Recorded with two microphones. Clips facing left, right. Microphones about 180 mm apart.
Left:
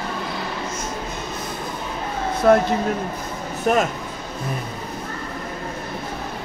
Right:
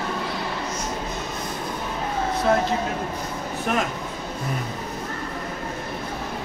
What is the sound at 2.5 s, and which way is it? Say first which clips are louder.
Speech: left 7 dB; 55° left (ahead or behind).